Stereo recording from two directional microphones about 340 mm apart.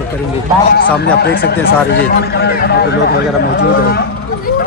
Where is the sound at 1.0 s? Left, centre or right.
Left.